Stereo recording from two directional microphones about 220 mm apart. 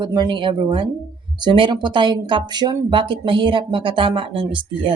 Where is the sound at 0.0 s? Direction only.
20° right (ahead or behind).